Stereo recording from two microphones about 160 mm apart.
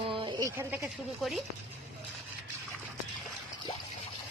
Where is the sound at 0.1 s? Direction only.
30° right (ahead or behind).